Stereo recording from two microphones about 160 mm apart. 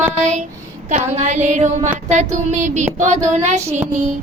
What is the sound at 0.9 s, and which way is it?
Child singing, 45° right (ahead or behind).